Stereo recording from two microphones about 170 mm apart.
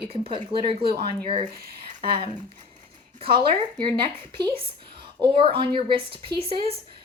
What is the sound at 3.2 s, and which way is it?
A woman's voice, 30° right (ahead or behind).